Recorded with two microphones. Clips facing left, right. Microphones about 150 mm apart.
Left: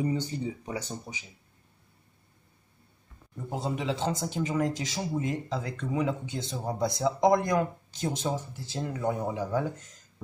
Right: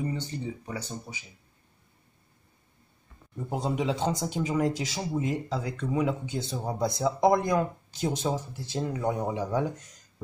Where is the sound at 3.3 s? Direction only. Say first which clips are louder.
Right 3 dB; 15° right (ahead or behind).